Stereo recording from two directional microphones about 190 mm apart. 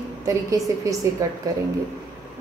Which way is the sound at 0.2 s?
15° right (ahead or behind).